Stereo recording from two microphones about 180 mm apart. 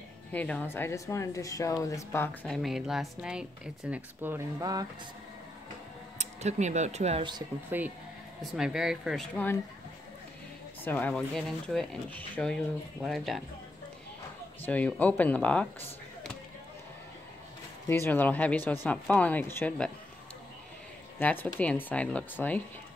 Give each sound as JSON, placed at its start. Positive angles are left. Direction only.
{"t": 0.3, "sound": "speech", "side_deg": 10}
{"t": 6.1, "sound": "speech", "side_deg": -40}
{"t": 7.7, "sound": "speech", "side_deg": -10}
{"t": 10.8, "sound": "speech", "side_deg": 10}
{"t": 14.6, "sound": "speech", "side_deg": 10}
{"t": 17.8, "sound": "speech", "side_deg": 10}
{"t": 21.2, "sound": "speech", "side_deg": 10}